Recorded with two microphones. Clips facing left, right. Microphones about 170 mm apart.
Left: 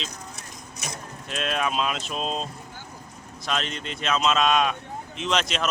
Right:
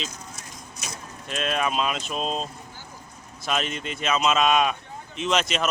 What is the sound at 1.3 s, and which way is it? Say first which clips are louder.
Speech: right 1 dB; centre (ahead or behind).